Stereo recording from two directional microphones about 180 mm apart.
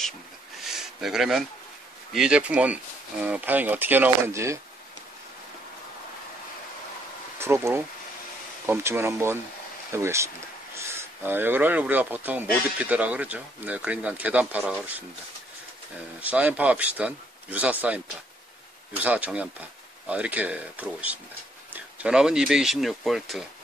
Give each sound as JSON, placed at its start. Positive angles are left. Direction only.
{"t": 0.7, "sound": "speech", "side_deg": 0}
{"t": 7.3, "sound": "speech", "side_deg": -15}
{"t": 16.2, "sound": "speech", "side_deg": -10}
{"t": 19.0, "sound": "speech", "side_deg": -10}